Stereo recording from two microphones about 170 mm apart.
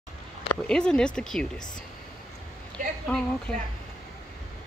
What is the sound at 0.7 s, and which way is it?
Speech, 5° left (ahead or behind).